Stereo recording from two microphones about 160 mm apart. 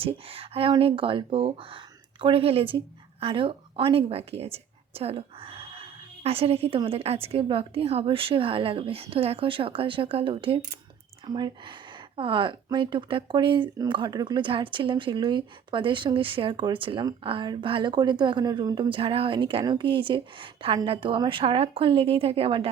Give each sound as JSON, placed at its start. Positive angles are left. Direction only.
{"t": 0.0, "sound": "speech", "side_deg": -35}